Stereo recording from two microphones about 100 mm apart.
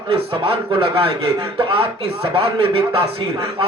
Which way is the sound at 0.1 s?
60° right (ahead or behind).